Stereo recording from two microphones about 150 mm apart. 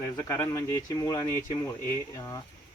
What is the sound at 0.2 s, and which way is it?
Speech, 15° left (ahead or behind).